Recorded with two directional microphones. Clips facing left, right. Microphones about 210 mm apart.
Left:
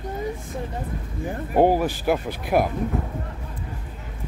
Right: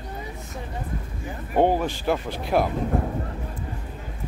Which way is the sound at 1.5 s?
10° left (ahead or behind).